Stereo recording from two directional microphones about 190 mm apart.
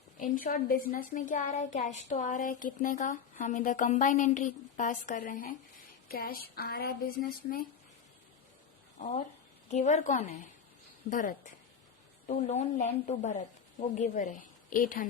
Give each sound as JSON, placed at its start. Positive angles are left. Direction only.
{"t": 0.2, "sound": "a woman's voice", "side_deg": 50}
{"t": 9.6, "sound": "a woman's voice", "side_deg": 40}